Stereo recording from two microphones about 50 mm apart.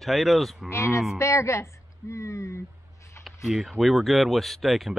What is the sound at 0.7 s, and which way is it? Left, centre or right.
Cattle, left.